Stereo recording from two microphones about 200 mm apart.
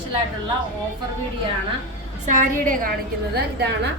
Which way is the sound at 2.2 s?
40° right (ahead or behind).